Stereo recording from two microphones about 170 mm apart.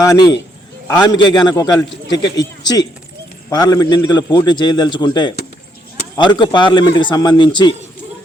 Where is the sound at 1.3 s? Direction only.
25° left (ahead or behind).